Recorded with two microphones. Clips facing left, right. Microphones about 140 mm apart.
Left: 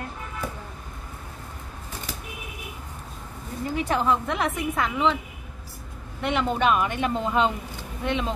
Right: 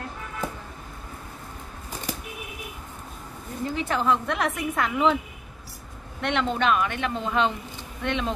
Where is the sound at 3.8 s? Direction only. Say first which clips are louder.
Left 1 dB; 10° left (ahead or behind).